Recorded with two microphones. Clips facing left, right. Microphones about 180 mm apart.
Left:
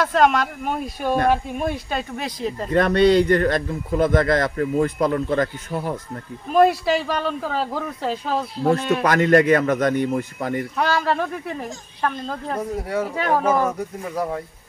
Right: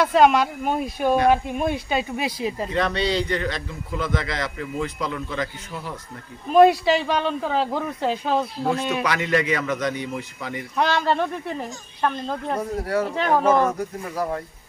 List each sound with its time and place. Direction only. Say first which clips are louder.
0.0 s speech: right 1 dB; 5° right (ahead or behind)
2.7 s a man's voice: left 10 dB; 50° left (ahead or behind)
6.5 s speech: right 2 dB; centre (ahead or behind)
8.9 s a man's voice: left 6 dB; 50° left (ahead or behind)
10.8 s speech: right 2 dB; 5° left (ahead or behind)